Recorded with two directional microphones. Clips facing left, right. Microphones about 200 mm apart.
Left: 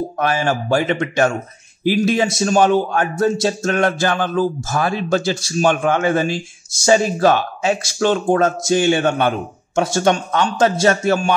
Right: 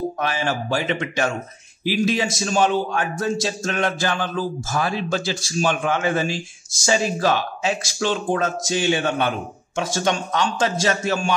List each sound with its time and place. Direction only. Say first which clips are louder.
0.2 s a man's voice: left 5 dB; 50° left (ahead or behind)